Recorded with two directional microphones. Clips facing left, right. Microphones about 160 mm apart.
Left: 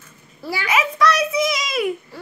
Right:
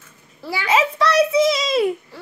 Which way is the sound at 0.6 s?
30° right (ahead or behind).